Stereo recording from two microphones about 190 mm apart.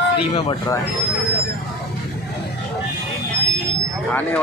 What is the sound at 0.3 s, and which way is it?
Speech, 30° left (ahead or behind).